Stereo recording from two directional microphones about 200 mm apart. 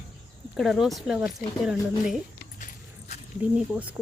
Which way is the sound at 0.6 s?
Centre (ahead or behind).